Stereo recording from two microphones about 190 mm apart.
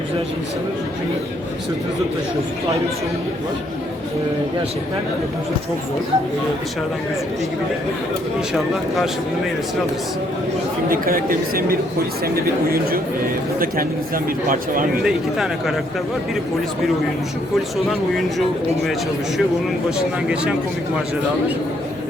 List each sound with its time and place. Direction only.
10.8 s speech: 50° right (ahead or behind)
15.0 s speech: centre (ahead or behind)
20.0 s speech: 5° right (ahead or behind)